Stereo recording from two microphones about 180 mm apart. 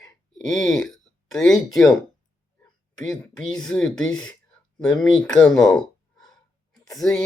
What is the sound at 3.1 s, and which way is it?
Speech, 5° left (ahead or behind).